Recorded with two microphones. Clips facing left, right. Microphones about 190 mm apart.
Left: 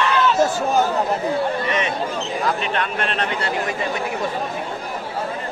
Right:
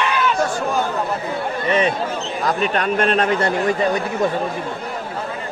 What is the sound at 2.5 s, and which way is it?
Speech, 40° right (ahead or behind).